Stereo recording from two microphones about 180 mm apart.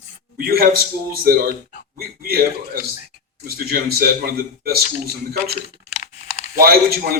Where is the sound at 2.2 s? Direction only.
60° right (ahead or behind).